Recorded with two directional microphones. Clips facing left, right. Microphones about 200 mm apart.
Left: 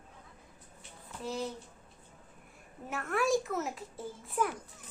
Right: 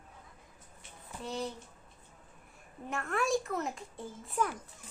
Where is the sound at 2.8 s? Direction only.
5° left (ahead or behind).